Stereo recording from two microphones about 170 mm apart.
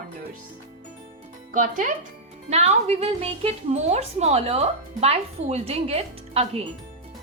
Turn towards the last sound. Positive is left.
turn(degrees=-35)  # may be behind; listen again after turning